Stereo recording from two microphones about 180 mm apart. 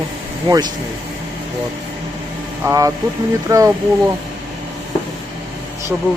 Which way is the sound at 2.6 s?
20° right (ahead or behind).